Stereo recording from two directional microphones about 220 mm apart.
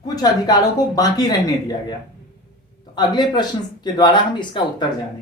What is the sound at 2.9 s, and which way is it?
Speech, 20° left (ahead or behind).